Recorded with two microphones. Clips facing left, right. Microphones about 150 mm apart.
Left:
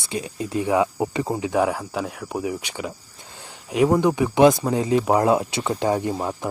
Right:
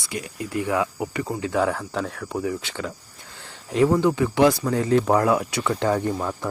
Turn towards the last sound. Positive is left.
turn(degrees=20)  # may be behind; listen again after turning